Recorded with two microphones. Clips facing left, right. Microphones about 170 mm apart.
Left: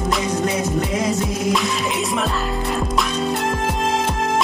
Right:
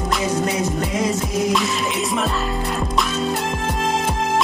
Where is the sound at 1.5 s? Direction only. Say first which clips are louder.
Even; centre (ahead or behind).